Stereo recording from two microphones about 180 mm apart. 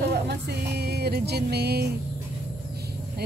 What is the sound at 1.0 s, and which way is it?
Speech, 65° right (ahead or behind).